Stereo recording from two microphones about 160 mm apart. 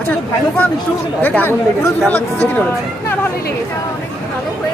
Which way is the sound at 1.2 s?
10° left (ahead or behind).